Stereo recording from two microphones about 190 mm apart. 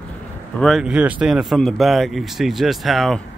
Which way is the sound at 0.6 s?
Centre (ahead or behind).